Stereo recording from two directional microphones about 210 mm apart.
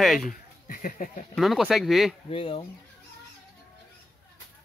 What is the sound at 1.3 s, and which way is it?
Speech, centre (ahead or behind).